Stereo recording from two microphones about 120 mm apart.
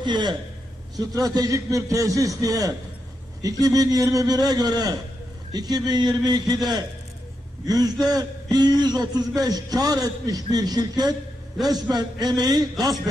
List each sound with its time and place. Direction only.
0.0 s a man's voice: 40° right (ahead or behind)